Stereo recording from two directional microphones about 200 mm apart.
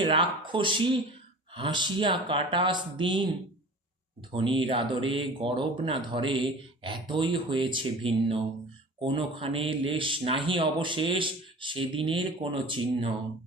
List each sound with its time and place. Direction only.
0.0 s a man's voice: 25° right (ahead or behind)
4.3 s a man's voice: 25° right (ahead or behind)